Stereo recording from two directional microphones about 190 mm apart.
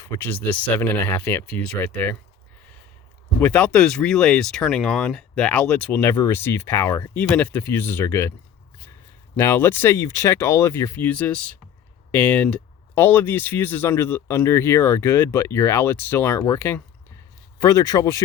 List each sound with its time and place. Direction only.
0.0 s speech: 10° left (ahead or behind)
3.4 s speech: 5° left (ahead or behind)
9.3 s speech: 10° left (ahead or behind)